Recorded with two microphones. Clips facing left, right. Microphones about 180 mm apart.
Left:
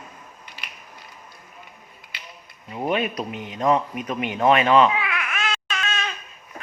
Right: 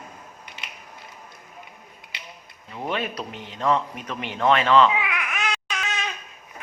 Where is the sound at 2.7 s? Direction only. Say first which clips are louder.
Left 4 dB; 15° left (ahead or behind).